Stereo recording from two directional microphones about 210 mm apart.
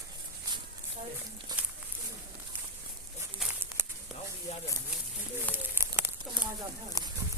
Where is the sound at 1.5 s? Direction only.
20° right (ahead or behind).